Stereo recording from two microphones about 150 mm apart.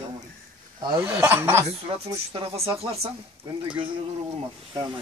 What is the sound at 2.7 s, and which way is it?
Speech, 40° right (ahead or behind).